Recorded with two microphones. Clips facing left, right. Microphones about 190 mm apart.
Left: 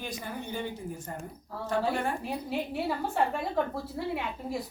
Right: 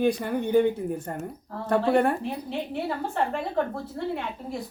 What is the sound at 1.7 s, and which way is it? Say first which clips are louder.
Speech: right 8 dB; 60° right (ahead or behind).